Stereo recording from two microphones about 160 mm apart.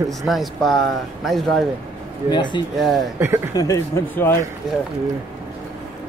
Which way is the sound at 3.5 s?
20° left (ahead or behind).